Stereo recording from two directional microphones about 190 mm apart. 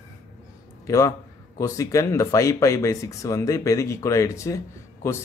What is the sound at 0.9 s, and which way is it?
Speech, 15° left (ahead or behind).